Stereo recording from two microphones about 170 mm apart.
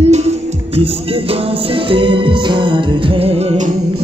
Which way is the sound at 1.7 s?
30° right (ahead or behind).